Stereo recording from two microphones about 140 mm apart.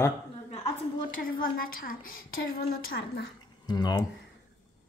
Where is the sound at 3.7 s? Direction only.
30° left (ahead or behind).